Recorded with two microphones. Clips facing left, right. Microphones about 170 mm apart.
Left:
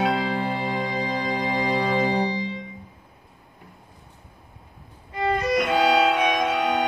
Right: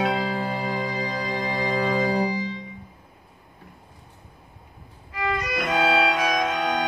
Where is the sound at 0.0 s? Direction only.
Centre (ahead or behind).